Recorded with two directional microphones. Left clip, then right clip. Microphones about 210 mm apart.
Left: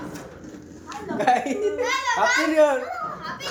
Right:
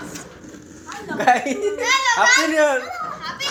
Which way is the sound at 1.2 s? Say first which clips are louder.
Right 4 dB; 35° right (ahead or behind).